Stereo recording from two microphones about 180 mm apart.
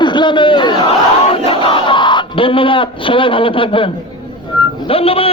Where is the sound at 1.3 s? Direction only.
30° left (ahead or behind).